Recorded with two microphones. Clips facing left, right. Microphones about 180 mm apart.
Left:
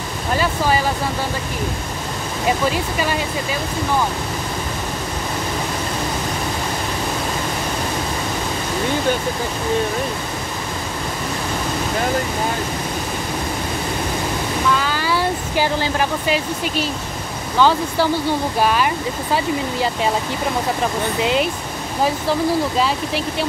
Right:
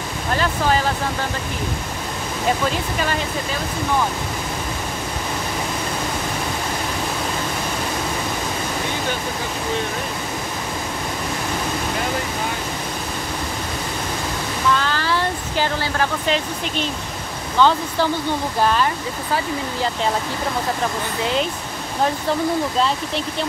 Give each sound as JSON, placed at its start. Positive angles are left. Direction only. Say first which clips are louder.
{"t": 0.4, "sound": "speech", "louder": "left 1 dB", "side_deg": 10}
{"t": 2.6, "sound": "speech", "louder": "left 2 dB", "side_deg": 10}
{"t": 14.8, "sound": "speech", "louder": "left 1 dB", "side_deg": 10}
{"t": 21.2, "sound": "speech", "louder": "left 3 dB", "side_deg": 15}
{"t": 22.8, "sound": "speech", "louder": "left 1 dB", "side_deg": 5}